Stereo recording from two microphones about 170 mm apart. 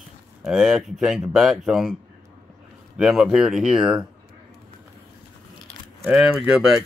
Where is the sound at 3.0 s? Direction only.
Centre (ahead or behind).